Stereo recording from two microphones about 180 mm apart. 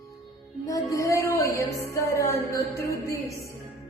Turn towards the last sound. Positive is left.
turn(degrees=15)  # may be behind; listen again after turning